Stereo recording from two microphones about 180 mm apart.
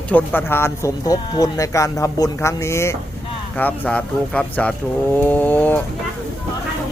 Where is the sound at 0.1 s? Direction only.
10° left (ahead or behind).